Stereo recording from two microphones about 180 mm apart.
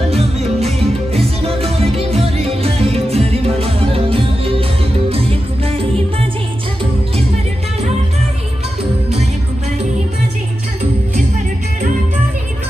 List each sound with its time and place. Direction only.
0.1 s music: 35° right (ahead or behind)